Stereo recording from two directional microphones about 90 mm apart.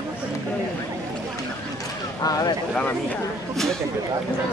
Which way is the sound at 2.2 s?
45° left (ahead or behind).